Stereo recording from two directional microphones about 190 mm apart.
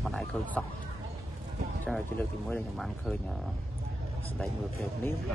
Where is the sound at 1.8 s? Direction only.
5° left (ahead or behind).